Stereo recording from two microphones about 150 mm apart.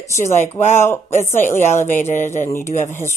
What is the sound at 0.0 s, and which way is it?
Speech, 50° left (ahead or behind).